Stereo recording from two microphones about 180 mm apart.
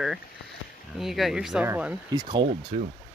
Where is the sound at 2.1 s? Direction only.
25° right (ahead or behind).